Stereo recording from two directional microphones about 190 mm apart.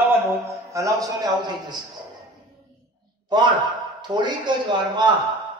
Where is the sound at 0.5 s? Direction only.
15° right (ahead or behind).